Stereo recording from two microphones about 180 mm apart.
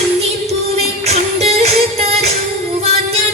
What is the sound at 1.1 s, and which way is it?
Music, 35° right (ahead or behind).